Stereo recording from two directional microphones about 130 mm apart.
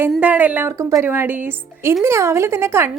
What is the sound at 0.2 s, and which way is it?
Speech, 10° right (ahead or behind).